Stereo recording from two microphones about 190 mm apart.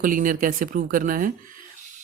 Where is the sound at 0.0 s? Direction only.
45° right (ahead or behind).